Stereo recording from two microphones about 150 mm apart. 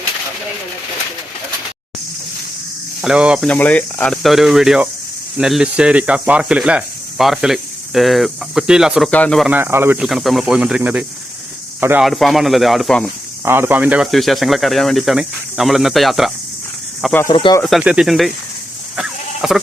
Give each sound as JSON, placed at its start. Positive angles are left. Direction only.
{"t": 3.0, "sound": "speech", "side_deg": -5}
{"t": 3.4, "sound": "speech", "side_deg": 10}
{"t": 9.0, "sound": "speech", "side_deg": 10}
{"t": 9.5, "sound": "speech", "side_deg": -15}
{"t": 10.0, "sound": "speech", "side_deg": -5}
{"t": 12.0, "sound": "speech", "side_deg": 0}
{"t": 13.4, "sound": "speech", "side_deg": -15}
{"t": 17.2, "sound": "speech", "side_deg": 30}
{"t": 17.6, "sound": "speech", "side_deg": 0}
{"t": 18.9, "sound": "sheep", "side_deg": -5}